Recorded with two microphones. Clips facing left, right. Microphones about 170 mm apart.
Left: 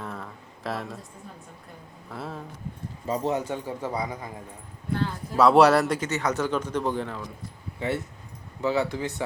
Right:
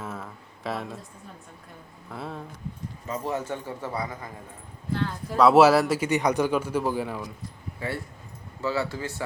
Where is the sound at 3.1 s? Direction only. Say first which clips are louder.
Left 3 dB; 20° left (ahead or behind).